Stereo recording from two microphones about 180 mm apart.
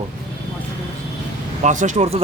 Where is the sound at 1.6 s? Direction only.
45° right (ahead or behind).